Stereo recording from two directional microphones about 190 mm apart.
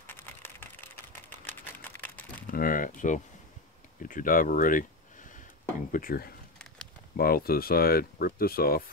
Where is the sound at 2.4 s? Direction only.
50° left (ahead or behind).